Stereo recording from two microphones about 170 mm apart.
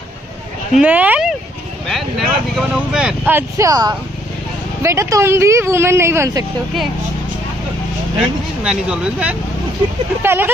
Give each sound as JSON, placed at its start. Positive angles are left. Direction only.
{"t": 0.7, "sound": "speech", "side_deg": -10}
{"t": 8.6, "sound": "speech", "side_deg": -5}